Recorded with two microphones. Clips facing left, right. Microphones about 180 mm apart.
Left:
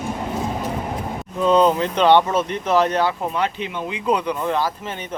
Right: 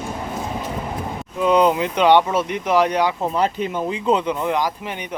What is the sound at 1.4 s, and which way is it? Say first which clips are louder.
Speech: even; 15° right (ahead or behind).